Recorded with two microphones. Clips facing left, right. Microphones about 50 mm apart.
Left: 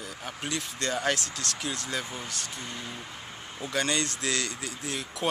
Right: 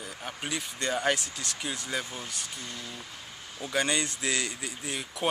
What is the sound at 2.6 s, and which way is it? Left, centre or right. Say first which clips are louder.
Speech: left 2 dB; centre.